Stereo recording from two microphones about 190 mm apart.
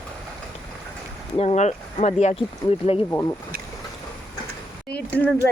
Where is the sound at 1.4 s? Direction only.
35° left (ahead or behind).